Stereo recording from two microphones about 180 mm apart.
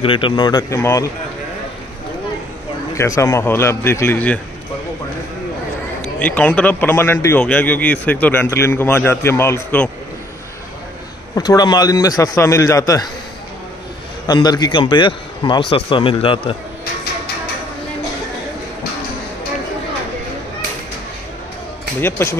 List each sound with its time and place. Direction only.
0.0 s a man's voice: 30° left (ahead or behind)
3.0 s a man's voice: 15° left (ahead or behind)
6.0 s a man's voice: 5° left (ahead or behind)
11.3 s a man's voice: 20° left (ahead or behind)
14.2 s a man's voice: 20° left (ahead or behind)
22.0 s a man's voice: 15° left (ahead or behind)